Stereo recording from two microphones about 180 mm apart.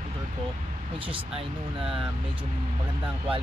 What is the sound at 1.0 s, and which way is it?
Speech, 30° right (ahead or behind).